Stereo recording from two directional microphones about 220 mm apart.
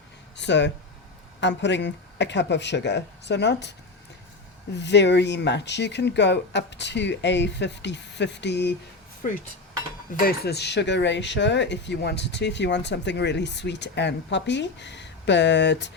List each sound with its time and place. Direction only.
0.3 s speech: 55° left (ahead or behind)
4.8 s speech: 50° left (ahead or behind)
10.2 s speech: 50° left (ahead or behind)